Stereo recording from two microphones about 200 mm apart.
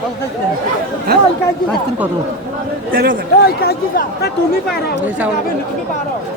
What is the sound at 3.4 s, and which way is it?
Speech, 50° left (ahead or behind).